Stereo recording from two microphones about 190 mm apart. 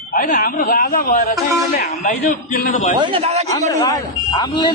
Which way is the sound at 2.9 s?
30° right (ahead or behind).